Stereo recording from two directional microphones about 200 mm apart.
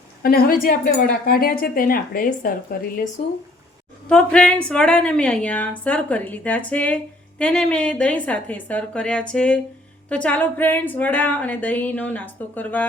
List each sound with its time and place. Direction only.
0.2 s speech: 50° left (ahead or behind)
4.1 s a woman's voice: 5° left (ahead or behind)